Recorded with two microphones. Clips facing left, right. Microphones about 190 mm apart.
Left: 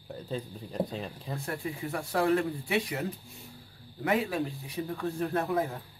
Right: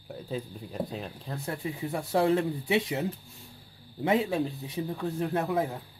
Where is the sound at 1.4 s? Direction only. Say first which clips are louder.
Right 2 dB; 20° right (ahead or behind).